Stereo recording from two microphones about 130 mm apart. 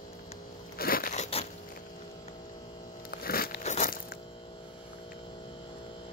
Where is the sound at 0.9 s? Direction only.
90° left.